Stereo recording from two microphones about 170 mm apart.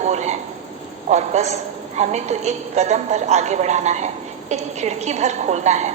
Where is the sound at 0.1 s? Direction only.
40° right (ahead or behind).